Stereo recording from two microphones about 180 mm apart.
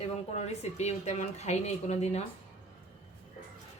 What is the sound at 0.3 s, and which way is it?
Speech, 40° left (ahead or behind).